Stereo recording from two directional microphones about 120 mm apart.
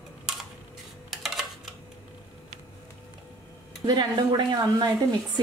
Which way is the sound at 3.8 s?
35° right (ahead or behind).